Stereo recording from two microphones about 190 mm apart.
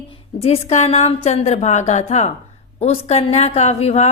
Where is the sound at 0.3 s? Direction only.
30° left (ahead or behind).